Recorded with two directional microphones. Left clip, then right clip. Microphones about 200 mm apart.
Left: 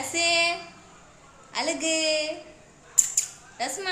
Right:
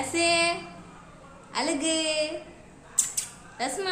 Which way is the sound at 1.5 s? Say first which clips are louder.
Left 1 dB; 5° left (ahead or behind).